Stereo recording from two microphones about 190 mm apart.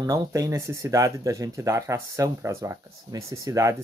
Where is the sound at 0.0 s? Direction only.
15° right (ahead or behind).